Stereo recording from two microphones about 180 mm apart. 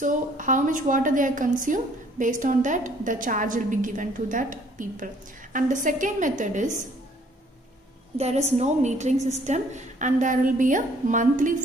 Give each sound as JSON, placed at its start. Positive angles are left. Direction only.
{"t": 0.0, "sound": "a woman's voice", "side_deg": -45}
{"t": 8.2, "sound": "a woman's voice", "side_deg": -35}